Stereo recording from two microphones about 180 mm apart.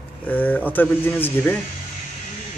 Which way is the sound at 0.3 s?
10° left (ahead or behind).